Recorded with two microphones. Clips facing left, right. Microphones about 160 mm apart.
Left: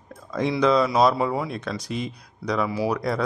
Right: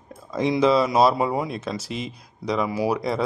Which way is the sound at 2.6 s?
15° right (ahead or behind).